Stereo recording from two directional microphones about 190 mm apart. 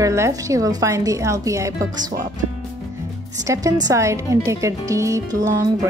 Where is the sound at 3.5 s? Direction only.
15° right (ahead or behind).